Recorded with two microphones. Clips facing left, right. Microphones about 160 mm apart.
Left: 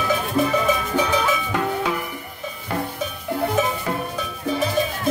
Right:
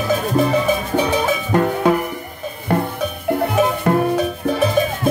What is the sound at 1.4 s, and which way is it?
Music, 50° right (ahead or behind).